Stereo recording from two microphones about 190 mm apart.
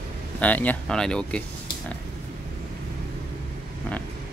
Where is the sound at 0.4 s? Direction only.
10° left (ahead or behind).